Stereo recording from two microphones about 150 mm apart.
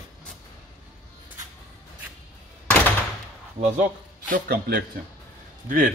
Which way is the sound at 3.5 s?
50° right (ahead or behind).